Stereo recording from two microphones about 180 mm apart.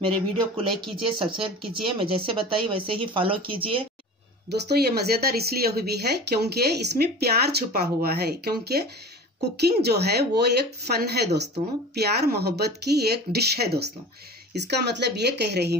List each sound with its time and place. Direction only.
0.0 s speech: 25° right (ahead or behind)
4.5 s a woman's voice: 65° right (ahead or behind)